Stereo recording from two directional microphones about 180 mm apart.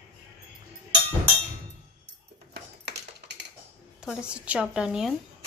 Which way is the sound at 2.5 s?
70° right (ahead or behind).